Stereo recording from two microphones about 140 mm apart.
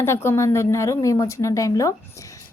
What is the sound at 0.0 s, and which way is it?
A woman's voice, 20° left (ahead or behind).